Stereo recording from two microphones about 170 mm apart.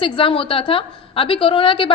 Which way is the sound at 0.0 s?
30° left (ahead or behind).